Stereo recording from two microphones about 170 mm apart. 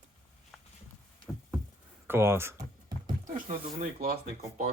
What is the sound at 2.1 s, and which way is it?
Speech, 15° right (ahead or behind).